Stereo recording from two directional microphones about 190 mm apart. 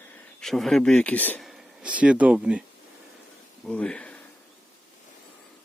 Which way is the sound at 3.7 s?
5° left (ahead or behind).